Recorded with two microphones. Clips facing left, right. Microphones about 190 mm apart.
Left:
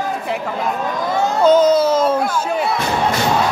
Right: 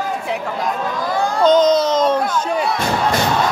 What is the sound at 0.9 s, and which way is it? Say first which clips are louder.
Speech: left 2 dB; 20° left (ahead or behind).